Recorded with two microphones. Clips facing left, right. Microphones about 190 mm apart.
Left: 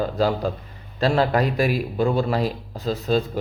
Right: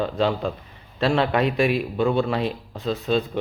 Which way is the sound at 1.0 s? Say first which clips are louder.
Left 1 dB; 35° left (ahead or behind).